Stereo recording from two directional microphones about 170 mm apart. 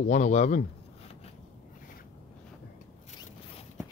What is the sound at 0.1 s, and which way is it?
Speech, 45° left (ahead or behind).